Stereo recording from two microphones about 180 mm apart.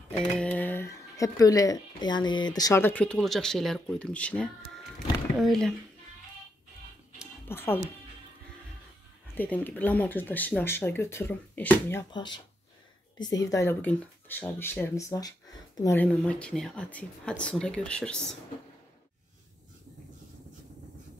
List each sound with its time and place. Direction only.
0.4 s speech: 10° left (ahead or behind)
7.4 s speech: 10° left (ahead or behind)
9.3 s speech: 10° left (ahead or behind)
12.1 s speech: 25° left (ahead or behind); by 18.2 s 5° left (ahead or behind)